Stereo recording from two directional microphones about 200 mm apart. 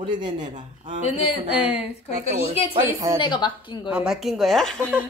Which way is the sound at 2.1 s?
30° left (ahead or behind).